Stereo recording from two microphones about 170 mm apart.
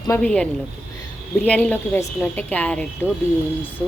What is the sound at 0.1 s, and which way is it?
Speech, 5° left (ahead or behind).